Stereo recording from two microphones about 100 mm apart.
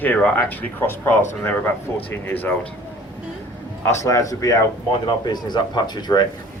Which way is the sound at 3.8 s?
30° left (ahead or behind).